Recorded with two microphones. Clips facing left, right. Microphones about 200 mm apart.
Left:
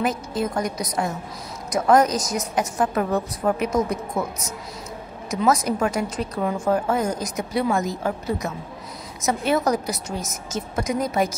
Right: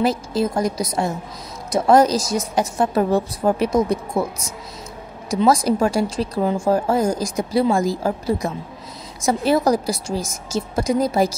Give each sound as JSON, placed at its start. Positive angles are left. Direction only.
{"t": 0.0, "sound": "a woman's voice", "side_deg": -30}
{"t": 5.3, "sound": "speech", "side_deg": -30}